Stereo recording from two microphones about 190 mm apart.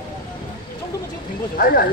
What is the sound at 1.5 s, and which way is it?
Speech, 50° left (ahead or behind).